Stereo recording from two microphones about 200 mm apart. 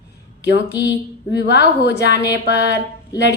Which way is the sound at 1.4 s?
55° left (ahead or behind).